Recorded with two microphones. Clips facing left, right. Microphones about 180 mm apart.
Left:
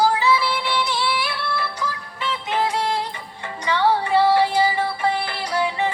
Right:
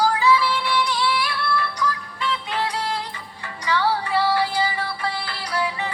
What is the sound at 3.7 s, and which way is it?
Music, 25° left (ahead or behind).